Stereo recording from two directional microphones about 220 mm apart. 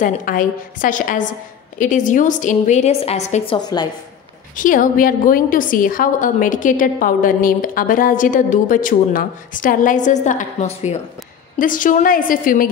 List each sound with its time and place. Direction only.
0.0 s a woman's voice: 40° left (ahead or behind)
3.5 s a woman's voice: 20° left (ahead or behind)
4.6 s a woman's voice: 35° left (ahead or behind)